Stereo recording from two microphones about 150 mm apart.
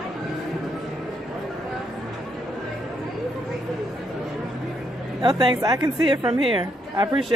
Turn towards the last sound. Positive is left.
turn(degrees=-30)  # may be behind; listen again after turning